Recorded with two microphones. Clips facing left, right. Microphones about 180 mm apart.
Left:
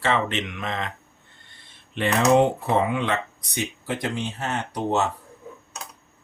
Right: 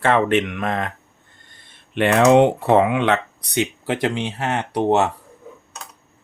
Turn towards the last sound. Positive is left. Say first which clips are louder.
# right 6 dB
turn(degrees=-70)  # may be behind; listen again after turning